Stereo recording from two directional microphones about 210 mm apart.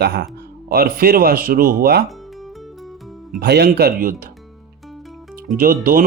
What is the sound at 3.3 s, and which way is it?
Speech, 50° right (ahead or behind).